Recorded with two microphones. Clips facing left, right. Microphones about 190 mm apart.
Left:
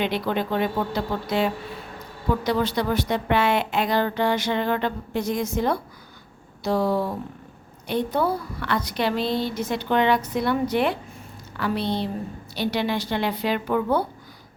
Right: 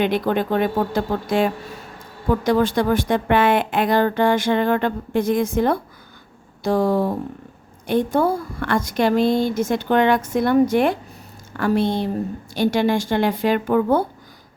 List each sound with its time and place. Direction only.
0.0 s speech: 50° right (ahead or behind)